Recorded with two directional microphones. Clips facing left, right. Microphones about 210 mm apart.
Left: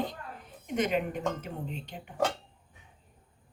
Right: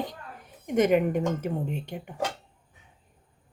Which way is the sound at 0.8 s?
55° right (ahead or behind).